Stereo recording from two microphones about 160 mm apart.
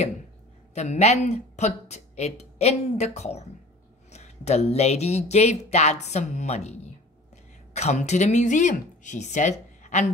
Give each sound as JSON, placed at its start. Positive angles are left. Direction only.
{"t": 0.7, "sound": "speech", "side_deg": 45}
{"t": 7.7, "sound": "speech", "side_deg": 45}